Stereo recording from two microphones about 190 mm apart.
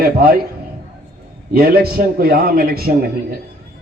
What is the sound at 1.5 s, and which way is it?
A man's voice, 55° right (ahead or behind).